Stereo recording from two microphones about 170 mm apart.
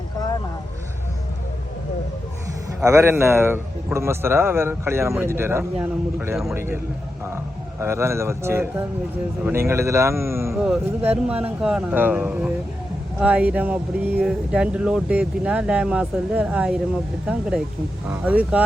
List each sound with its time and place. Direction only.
2.8 s speech: 15° right (ahead or behind)
7.8 s speech: 15° right (ahead or behind)
10.5 s speech: 5° right (ahead or behind)
18.1 s speech: 10° right (ahead or behind)